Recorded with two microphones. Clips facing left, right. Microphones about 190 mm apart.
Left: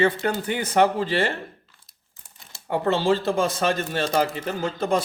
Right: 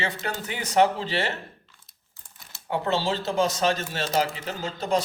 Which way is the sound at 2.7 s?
55° left (ahead or behind).